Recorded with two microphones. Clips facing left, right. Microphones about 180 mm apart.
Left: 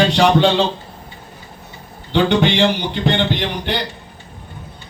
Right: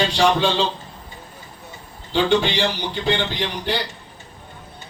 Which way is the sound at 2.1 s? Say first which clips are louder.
Left 3 dB; 65° left (ahead or behind).